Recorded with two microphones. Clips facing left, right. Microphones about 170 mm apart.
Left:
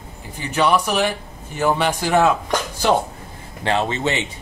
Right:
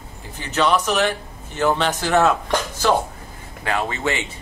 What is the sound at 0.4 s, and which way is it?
A man's voice, 10° left (ahead or behind).